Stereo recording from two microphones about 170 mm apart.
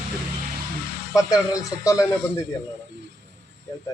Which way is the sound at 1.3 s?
20° left (ahead or behind).